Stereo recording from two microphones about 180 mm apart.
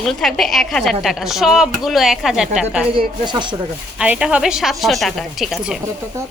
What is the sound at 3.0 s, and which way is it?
Speech, 25° right (ahead or behind).